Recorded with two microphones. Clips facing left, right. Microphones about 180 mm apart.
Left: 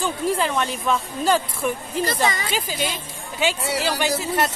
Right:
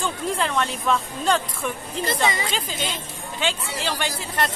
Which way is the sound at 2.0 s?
25° right (ahead or behind).